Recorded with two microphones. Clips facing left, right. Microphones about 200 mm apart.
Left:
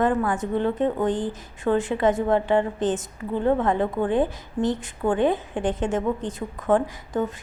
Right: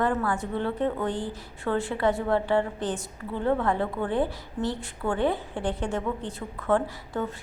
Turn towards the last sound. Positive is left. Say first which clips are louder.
# left 5 dB
turn(degrees=15)  # may be behind; listen again after turning